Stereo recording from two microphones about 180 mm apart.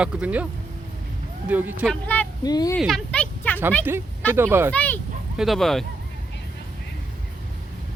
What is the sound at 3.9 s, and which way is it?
Speech, 10° right (ahead or behind).